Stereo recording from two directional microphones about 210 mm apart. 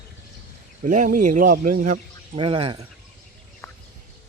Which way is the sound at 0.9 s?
40° right (ahead or behind).